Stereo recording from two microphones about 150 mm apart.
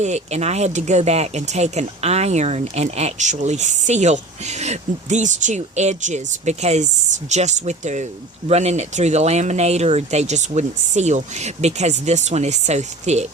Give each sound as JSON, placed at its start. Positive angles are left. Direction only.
{"t": 0.0, "sound": "speech", "side_deg": -50}